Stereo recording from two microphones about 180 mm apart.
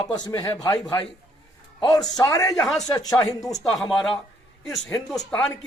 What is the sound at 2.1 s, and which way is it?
Speech, 20° left (ahead or behind).